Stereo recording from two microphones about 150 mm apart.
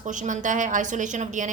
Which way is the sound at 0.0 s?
55° right (ahead or behind).